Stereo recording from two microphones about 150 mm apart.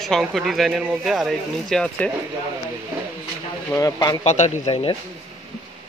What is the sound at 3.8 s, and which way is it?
Speech, 25° left (ahead or behind).